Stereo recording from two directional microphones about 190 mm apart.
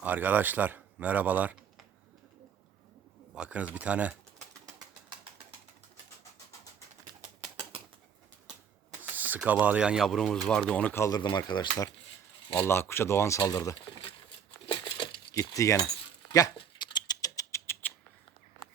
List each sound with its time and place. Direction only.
0.0 s speech: 10° right (ahead or behind)
3.3 s speech: 5° right (ahead or behind)
9.0 s speech: 10° right (ahead or behind); by 11.9 s 20° left (ahead or behind)
12.5 s a sound: 15° left (ahead or behind)